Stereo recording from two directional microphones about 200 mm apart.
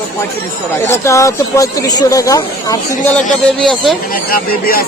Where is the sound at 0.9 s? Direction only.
15° left (ahead or behind).